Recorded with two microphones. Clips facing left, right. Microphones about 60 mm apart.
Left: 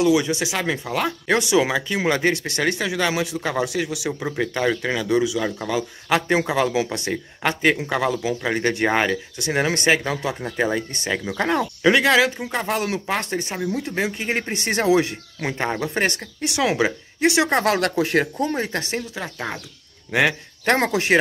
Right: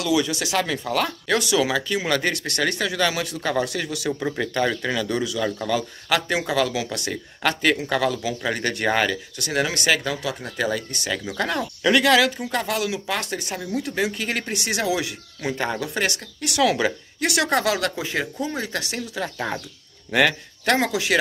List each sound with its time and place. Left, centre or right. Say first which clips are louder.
0.0 s speech: left 4 dB; left
12.7 s speech: left 2 dB; left
17.6 s speech: left 4 dB; left
18.2 s speech: left 4 dB; left
19.1 s speech: right 2 dB; centre
20.6 s speech: left 2 dB; left